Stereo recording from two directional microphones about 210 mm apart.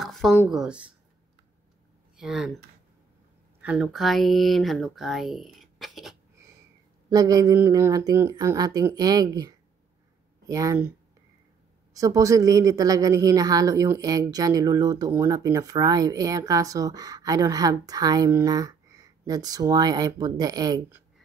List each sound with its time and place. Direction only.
0.0 s a sound: centre (ahead or behind)
0.5 s speech: 5° right (ahead or behind)
2.1 s speech: 5° right (ahead or behind)
3.6 s speech: 5° right (ahead or behind)
7.1 s a woman's voice: 15° right (ahead or behind)